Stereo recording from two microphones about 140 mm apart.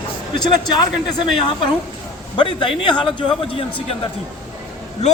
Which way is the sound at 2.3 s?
35° left (ahead or behind).